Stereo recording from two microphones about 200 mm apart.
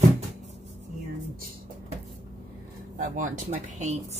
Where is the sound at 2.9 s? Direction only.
40° right (ahead or behind).